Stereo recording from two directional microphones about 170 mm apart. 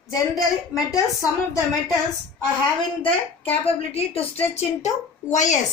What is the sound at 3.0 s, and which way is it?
A woman's voice, 35° left (ahead or behind).